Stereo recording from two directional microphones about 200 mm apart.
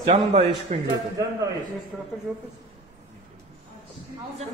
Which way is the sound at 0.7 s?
35° right (ahead or behind).